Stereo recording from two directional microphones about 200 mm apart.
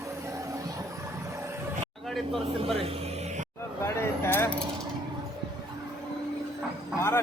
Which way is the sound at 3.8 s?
10° left (ahead or behind).